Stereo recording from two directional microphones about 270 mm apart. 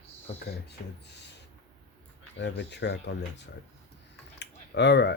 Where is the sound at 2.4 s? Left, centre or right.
Left.